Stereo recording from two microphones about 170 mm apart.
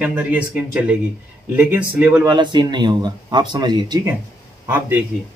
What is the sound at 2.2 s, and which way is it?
Speech, 25° right (ahead or behind).